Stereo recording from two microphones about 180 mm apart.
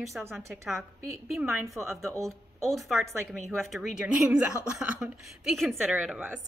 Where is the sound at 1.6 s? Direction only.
15° right (ahead or behind).